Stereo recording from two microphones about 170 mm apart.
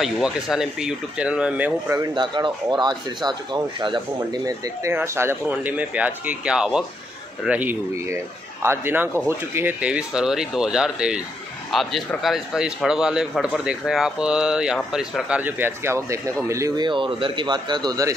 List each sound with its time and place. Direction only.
0.0 s speech: 5° right (ahead or behind)
1.9 s speech: 25° right (ahead or behind)